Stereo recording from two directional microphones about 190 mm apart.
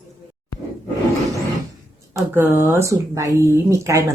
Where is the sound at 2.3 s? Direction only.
10° right (ahead or behind).